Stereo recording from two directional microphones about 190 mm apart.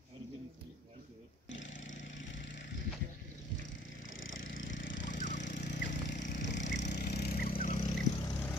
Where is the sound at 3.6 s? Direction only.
85° left; by 7.8 s 45° left (ahead or behind).